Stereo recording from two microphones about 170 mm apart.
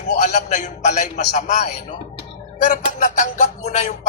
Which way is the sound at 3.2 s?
45° left (ahead or behind).